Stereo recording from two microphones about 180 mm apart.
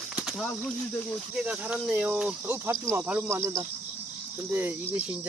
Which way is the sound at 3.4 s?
20° right (ahead or behind).